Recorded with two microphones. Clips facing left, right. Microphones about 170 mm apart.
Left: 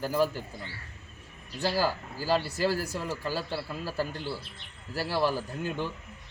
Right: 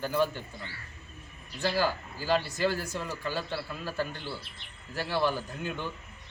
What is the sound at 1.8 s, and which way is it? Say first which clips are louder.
A man's voice: left 1 dB; 35° left (ahead or behind).